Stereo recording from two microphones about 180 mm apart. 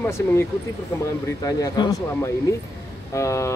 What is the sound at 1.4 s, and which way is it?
Speech, 20° left (ahead or behind).